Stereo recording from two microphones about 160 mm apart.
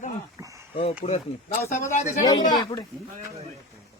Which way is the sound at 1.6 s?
20° left (ahead or behind).